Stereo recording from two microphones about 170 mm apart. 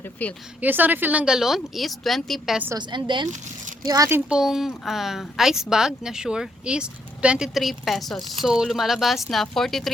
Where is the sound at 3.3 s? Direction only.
50° right (ahead or behind).